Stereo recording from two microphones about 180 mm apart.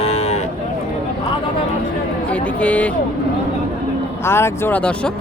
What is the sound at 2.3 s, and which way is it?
Speech, 5° left (ahead or behind).